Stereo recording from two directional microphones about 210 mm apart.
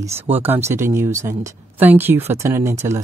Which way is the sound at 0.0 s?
10° right (ahead or behind).